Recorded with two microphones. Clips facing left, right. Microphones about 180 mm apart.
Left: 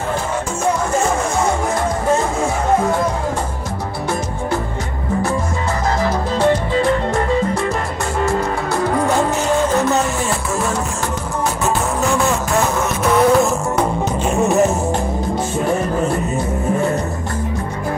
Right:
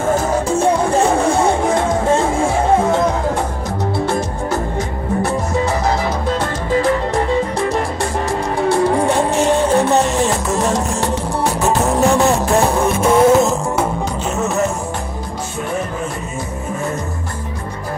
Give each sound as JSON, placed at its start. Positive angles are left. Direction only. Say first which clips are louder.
{"t": 0.1, "sound": "music", "louder": "right 7 dB", "side_deg": -35}
{"t": 8.3, "sound": "music", "louder": "right 2 dB", "side_deg": -30}
{"t": 12.0, "sound": "music", "louder": "right 5 dB", "side_deg": -35}
{"t": 14.3, "sound": "music", "louder": "left 5 dB", "side_deg": 15}